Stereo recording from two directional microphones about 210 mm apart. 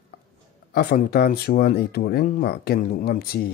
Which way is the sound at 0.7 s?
45° left (ahead or behind).